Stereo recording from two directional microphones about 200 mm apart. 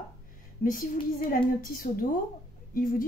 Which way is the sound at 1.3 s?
45° left (ahead or behind).